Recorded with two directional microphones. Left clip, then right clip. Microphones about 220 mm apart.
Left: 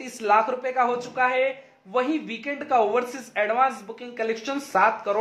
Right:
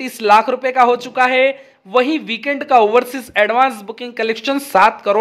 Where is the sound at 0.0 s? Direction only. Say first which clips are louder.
Right 9 dB; 40° right (ahead or behind).